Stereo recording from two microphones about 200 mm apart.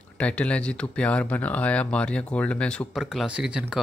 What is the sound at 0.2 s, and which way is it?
Speech, 5° left (ahead or behind).